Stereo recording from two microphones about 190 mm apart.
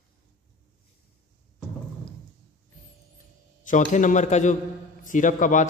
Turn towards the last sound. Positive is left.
turn(degrees=40)  # may be behind; listen again after turning